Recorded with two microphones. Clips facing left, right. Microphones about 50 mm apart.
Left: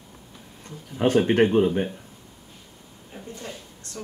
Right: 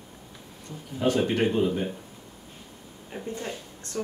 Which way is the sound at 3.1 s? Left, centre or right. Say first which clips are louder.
Right 4 dB; right.